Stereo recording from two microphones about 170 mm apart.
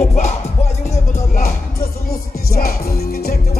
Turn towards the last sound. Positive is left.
turn(degrees=65)  # may be behind; listen again after turning